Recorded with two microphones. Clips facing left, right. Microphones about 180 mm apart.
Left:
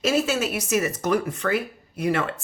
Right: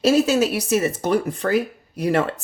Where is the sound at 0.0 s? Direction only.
40° right (ahead or behind).